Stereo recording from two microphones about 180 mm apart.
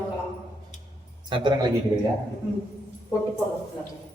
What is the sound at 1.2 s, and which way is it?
Speech, 30° right (ahead or behind).